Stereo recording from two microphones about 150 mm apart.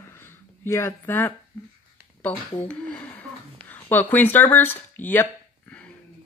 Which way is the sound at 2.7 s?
10° left (ahead or behind).